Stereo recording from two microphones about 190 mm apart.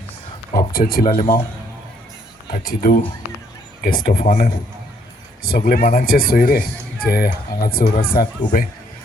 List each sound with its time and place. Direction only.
0.5 s speech: 50° left (ahead or behind)
2.5 s speech: 50° left (ahead or behind)